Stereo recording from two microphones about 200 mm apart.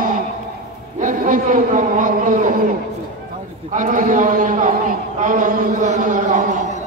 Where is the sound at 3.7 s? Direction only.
40° right (ahead or behind).